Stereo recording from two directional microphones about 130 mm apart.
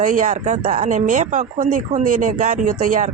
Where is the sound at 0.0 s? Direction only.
85° right.